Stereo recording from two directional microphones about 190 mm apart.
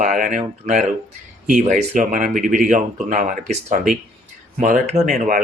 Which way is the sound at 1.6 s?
40° right (ahead or behind).